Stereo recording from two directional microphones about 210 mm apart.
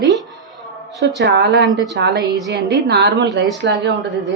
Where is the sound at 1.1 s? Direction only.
55° right (ahead or behind).